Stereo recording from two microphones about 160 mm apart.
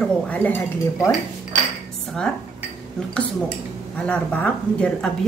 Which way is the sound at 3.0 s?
5° left (ahead or behind).